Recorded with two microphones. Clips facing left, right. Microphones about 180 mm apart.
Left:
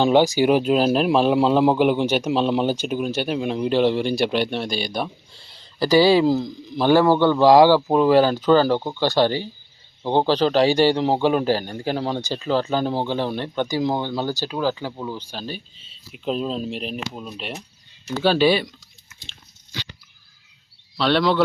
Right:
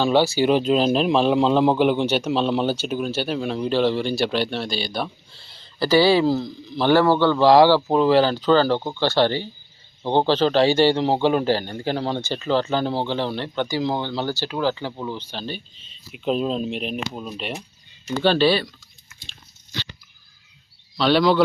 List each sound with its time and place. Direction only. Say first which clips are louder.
0.0 s a man's voice: left 2 dB; 15° left (ahead or behind)
5.9 s a man's voice: left 1 dB; 15° left (ahead or behind)
16.1 s a man's voice: right 2 dB; centre (ahead or behind); by 18.7 s 15° left (ahead or behind)
20.9 s speech: right 2 dB; centre (ahead or behind)